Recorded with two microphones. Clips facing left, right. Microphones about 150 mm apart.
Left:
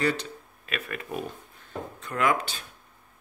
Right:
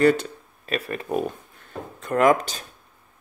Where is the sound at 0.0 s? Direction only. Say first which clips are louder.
Right 9 dB; 50° right (ahead or behind).